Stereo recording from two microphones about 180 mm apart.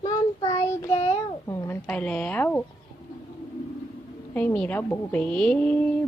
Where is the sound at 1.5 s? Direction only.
15° left (ahead or behind).